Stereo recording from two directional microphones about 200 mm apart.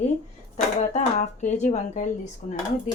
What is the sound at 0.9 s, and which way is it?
Speech, 35° left (ahead or behind).